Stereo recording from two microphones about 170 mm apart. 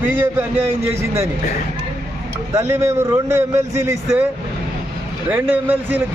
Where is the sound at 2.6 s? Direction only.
15° right (ahead or behind).